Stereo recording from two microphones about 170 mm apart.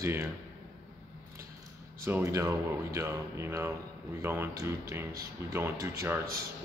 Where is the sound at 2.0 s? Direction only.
15° right (ahead or behind).